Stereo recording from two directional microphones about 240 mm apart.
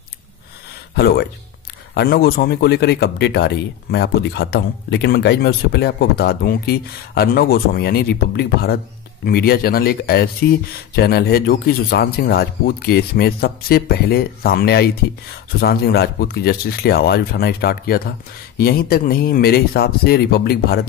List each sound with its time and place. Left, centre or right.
0.9 s speech: left